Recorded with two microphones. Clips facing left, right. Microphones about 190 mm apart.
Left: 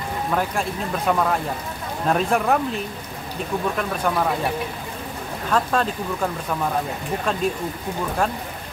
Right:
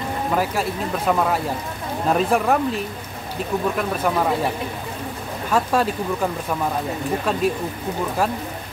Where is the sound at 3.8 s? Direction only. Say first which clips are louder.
Right 1 dB; 5° right (ahead or behind).